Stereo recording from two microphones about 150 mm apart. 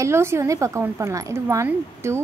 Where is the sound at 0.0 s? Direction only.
15° right (ahead or behind).